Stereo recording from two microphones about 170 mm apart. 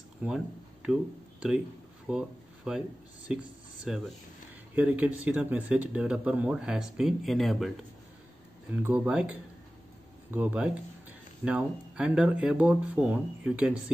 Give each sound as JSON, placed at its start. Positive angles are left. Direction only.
{"t": 0.2, "sound": "speech", "side_deg": -5}
{"t": 2.0, "sound": "speech", "side_deg": -5}
{"t": 8.8, "sound": "speech", "side_deg": -10}